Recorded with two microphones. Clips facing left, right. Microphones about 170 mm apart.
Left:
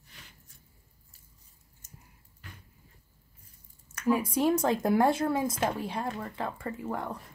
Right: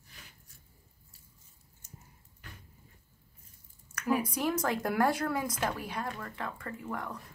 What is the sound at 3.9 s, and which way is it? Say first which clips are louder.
Speech: left 4 dB; 25° left (ahead or behind).